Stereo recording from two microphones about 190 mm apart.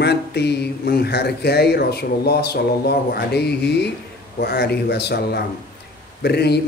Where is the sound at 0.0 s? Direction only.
60° left (ahead or behind).